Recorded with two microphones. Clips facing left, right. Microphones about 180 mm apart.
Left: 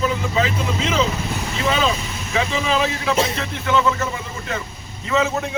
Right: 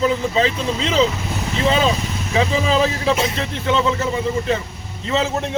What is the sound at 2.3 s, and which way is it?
A man's voice, 30° right (ahead or behind).